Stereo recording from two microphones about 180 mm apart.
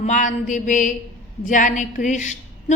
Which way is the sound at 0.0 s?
40° left (ahead or behind).